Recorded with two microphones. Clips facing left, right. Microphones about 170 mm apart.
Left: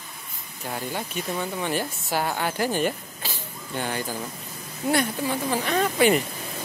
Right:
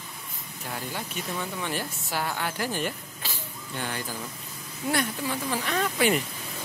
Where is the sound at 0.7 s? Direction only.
25° left (ahead or behind).